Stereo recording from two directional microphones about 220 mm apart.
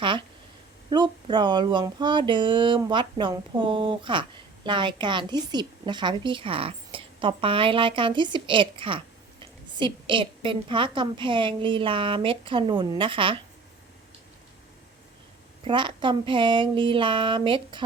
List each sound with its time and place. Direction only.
0.0 s speech: 20° right (ahead or behind)
15.6 s speech: 20° right (ahead or behind)